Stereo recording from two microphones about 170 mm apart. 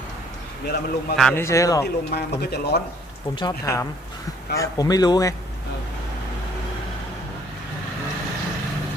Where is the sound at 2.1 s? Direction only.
70° left (ahead or behind).